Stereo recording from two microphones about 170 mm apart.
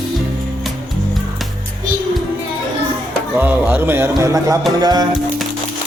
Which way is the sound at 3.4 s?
10° right (ahead or behind).